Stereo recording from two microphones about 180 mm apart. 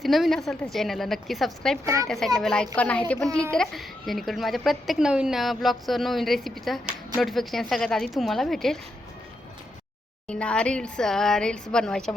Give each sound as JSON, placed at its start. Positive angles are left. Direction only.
{"t": 0.0, "sound": "a child's voice", "side_deg": 0}
{"t": 1.8, "sound": "a child's voice", "side_deg": -15}
{"t": 2.0, "sound": "a child's voice", "side_deg": 0}
{"t": 10.2, "sound": "a child's voice", "side_deg": 5}